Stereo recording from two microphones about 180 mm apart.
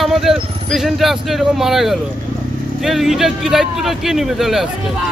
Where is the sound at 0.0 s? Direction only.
Centre (ahead or behind).